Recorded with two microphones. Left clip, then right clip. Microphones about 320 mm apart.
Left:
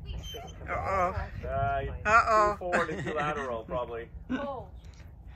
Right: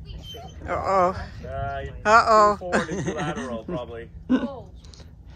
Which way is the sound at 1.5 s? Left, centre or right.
Centre.